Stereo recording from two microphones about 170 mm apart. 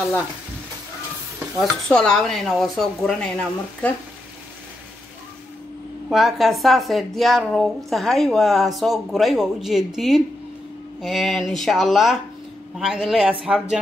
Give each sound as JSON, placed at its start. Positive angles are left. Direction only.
{"t": 1.6, "sound": "a woman's voice", "side_deg": 5}
{"t": 6.0, "sound": "a woman's voice", "side_deg": 0}